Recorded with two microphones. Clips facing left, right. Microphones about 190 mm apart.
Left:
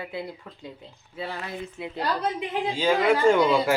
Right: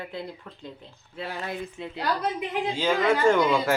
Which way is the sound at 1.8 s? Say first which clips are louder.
Left 1 dB; 5° left (ahead or behind).